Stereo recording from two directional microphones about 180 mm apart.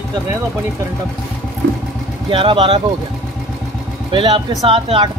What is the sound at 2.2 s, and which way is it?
Speech, 30° right (ahead or behind).